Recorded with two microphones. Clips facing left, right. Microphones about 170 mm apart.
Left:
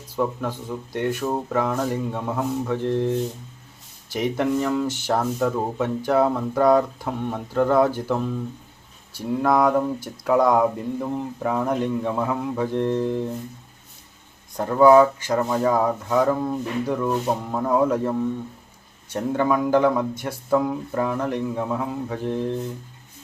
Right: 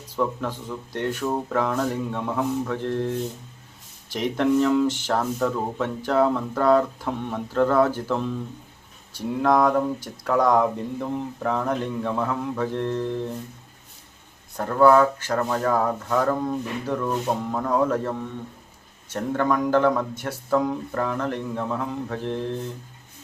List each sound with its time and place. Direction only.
0.2 s speech: 10° left (ahead or behind)
14.5 s speech: 15° left (ahead or behind)
19.1 s speech: 15° left (ahead or behind)